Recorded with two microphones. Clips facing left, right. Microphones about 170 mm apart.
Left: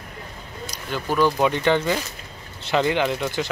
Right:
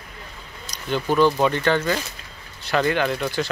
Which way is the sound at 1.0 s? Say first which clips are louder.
Right 2 dB; 20° right (ahead or behind).